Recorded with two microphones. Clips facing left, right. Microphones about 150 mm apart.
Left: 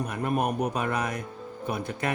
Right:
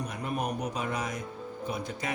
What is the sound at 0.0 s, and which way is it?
A man's voice, 55° left (ahead or behind).